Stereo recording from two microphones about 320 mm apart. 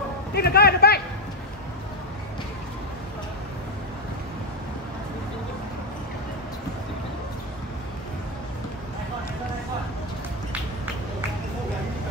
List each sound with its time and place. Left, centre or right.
0.3 s speech: left